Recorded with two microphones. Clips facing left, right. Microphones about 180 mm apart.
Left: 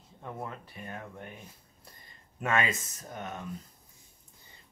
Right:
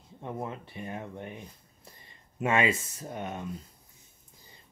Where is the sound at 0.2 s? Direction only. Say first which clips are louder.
Right 4 dB; 25° right (ahead or behind).